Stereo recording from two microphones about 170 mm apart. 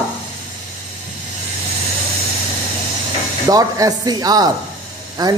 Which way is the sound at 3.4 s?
20° right (ahead or behind).